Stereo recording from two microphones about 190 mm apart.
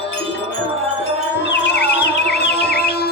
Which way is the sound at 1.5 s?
65° left (ahead or behind).